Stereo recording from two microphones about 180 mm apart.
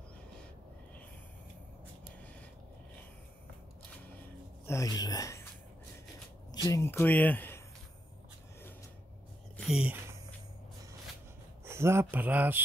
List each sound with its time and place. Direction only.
4.6 s speech: 20° left (ahead or behind)
6.5 s speech: 20° left (ahead or behind)
9.6 s a sound: 5° right (ahead or behind)
11.6 s speech: 15° right (ahead or behind)